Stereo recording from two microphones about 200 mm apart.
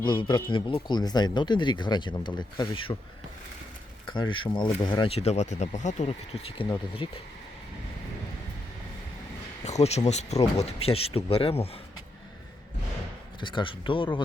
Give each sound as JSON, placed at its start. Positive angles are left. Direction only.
{"t": 0.0, "sound": "speech", "side_deg": 25}
{"t": 4.1, "sound": "speech", "side_deg": 25}
{"t": 9.6, "sound": "speech", "side_deg": 35}
{"t": 13.4, "sound": "speech", "side_deg": 25}